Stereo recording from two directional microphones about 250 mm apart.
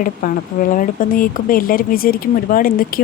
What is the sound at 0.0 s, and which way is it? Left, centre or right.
Speech, left.